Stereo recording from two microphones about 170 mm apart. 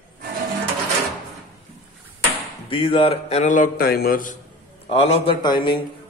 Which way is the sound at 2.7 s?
30° left (ahead or behind).